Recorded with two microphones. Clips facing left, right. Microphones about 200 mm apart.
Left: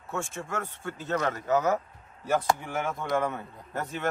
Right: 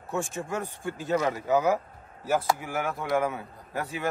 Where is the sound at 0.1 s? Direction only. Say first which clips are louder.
Right 3 dB; 15° right (ahead or behind).